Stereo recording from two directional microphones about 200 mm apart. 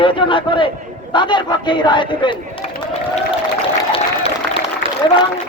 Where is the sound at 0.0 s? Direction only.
25° left (ahead or behind).